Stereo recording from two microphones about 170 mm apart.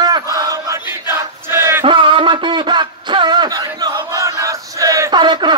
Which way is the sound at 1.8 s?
30° right (ahead or behind).